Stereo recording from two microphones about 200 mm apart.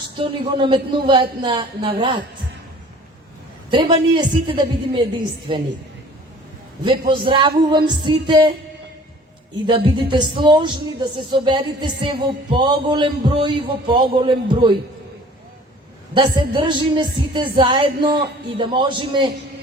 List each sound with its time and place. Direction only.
0.2 s speech: 25° right (ahead or behind)
3.7 s speech: 25° right (ahead or behind)
7.1 s speech: 25° right (ahead or behind)
9.6 s speech: 25° right (ahead or behind)
16.1 s speech: 25° right (ahead or behind)